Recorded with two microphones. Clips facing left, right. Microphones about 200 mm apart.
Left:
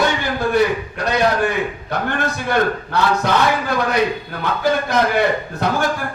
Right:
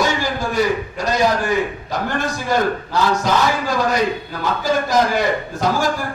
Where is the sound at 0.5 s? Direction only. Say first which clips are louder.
Left 2 dB; 60° left (ahead or behind).